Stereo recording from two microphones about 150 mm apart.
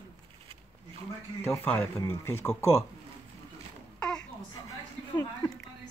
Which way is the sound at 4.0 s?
5° left (ahead or behind).